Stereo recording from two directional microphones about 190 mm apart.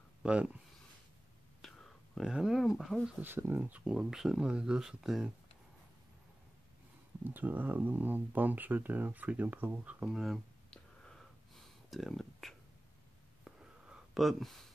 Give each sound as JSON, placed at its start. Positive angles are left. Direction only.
{"t": 0.2, "sound": "speech", "side_deg": -5}
{"t": 1.6, "sound": "whispering", "side_deg": 0}
{"t": 2.8, "sound": "speech", "side_deg": 0}
{"t": 7.2, "sound": "speech", "side_deg": -10}
{"t": 13.4, "sound": "a sound", "side_deg": -5}